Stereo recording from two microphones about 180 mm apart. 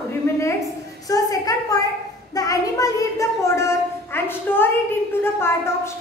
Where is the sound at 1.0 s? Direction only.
20° left (ahead or behind).